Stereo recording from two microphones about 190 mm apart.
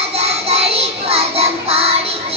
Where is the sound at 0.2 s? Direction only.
30° right (ahead or behind).